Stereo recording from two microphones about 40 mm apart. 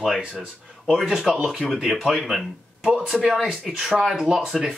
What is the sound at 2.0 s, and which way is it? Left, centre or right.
Speech, centre.